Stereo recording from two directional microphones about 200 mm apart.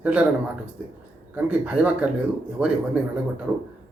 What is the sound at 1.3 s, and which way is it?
Speech, 5° right (ahead or behind).